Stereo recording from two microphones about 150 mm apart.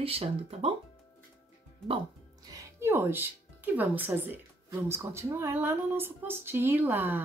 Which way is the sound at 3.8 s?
15° right (ahead or behind).